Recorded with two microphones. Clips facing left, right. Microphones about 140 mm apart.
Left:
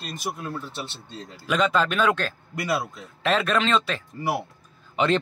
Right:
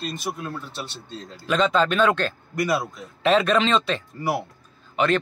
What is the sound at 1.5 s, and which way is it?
Speech, 5° left (ahead or behind).